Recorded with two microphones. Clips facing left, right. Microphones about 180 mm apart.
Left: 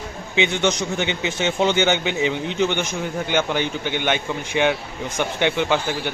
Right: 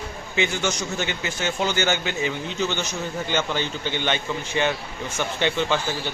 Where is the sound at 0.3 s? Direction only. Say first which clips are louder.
Left 4 dB; 20° left (ahead or behind).